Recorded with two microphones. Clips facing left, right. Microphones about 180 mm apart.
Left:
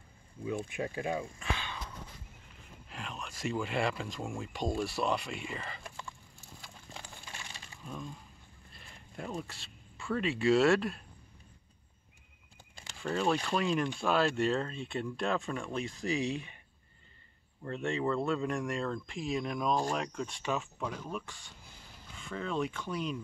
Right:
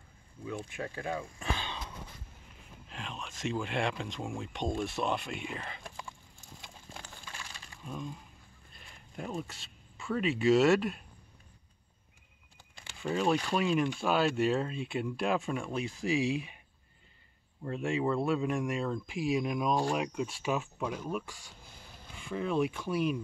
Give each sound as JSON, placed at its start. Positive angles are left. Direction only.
{"t": 0.5, "sound": "speech", "side_deg": 15}
{"t": 1.4, "sound": "a sound", "side_deg": -35}
{"t": 2.9, "sound": "speech", "side_deg": 0}
{"t": 7.8, "sound": "speech", "side_deg": -5}
{"t": 13.0, "sound": "speech", "side_deg": -5}
{"t": 17.6, "sound": "speech", "side_deg": -10}